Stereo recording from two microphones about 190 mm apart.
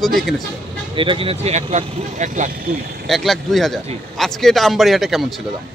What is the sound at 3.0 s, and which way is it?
Speech, centre (ahead or behind).